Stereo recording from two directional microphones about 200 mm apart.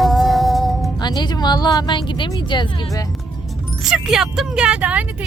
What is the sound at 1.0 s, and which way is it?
Speech, 20° left (ahead or behind).